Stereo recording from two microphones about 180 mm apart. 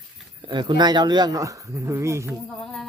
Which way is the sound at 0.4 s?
25° right (ahead or behind).